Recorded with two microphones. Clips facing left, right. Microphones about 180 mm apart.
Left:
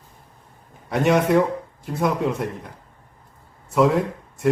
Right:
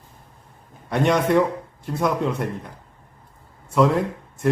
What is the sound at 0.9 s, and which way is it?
Speech, 5° left (ahead or behind).